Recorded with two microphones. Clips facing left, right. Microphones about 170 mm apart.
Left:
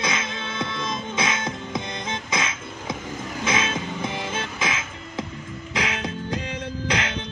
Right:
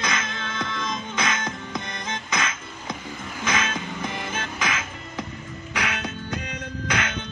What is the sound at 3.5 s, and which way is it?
Music, 25° left (ahead or behind).